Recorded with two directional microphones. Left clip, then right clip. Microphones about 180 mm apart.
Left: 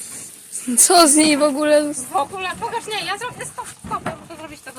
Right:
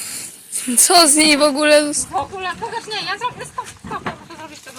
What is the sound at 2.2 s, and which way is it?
Speech, 30° left (ahead or behind).